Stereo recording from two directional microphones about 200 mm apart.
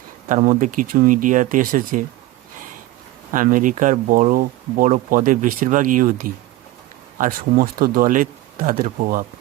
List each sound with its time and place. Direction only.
0.3 s speech: 40° right (ahead or behind)
3.3 s speech: 40° right (ahead or behind)